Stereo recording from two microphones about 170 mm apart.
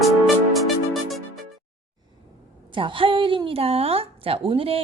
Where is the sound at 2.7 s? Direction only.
30° right (ahead or behind).